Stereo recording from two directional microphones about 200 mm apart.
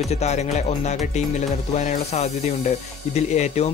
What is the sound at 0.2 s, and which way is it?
Speech, 35° left (ahead or behind).